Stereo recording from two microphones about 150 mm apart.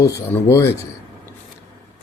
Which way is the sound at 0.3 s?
15° left (ahead or behind).